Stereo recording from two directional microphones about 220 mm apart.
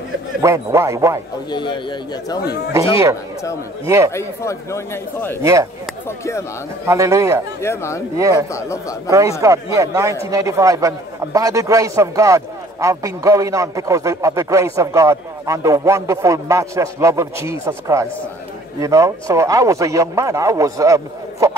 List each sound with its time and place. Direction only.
0.4 s a man's voice: 15° right (ahead or behind)
1.5 s a man's voice: 20° left (ahead or behind)
3.8 s a man's voice: 15° right (ahead or behind)
4.1 s a man's voice: 10° left (ahead or behind)
5.4 s a man's voice: 15° right (ahead or behind)
6.0 s a man's voice: 10° left (ahead or behind)
6.9 s a man's voice: 15° right (ahead or behind)
7.6 s a man's voice: 10° left (ahead or behind)
8.2 s a man's voice: 15° right (ahead or behind)
8.5 s a man's voice: 15° left (ahead or behind)
9.4 s a man's voice: 15° right (ahead or behind)